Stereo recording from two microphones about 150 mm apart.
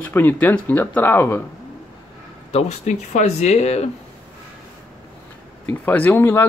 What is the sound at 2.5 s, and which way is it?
Speech, 50° left (ahead or behind).